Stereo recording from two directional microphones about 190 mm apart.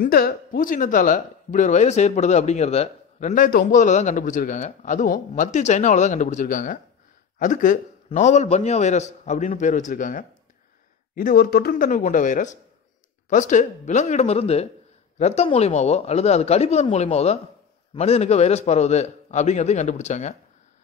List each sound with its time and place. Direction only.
0.0 s speech: 55° left (ahead or behind); by 20.3 s 35° left (ahead or behind)